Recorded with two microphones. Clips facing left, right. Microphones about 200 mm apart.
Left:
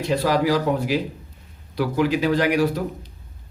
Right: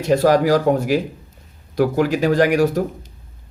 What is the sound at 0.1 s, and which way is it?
Speech, 45° right (ahead or behind).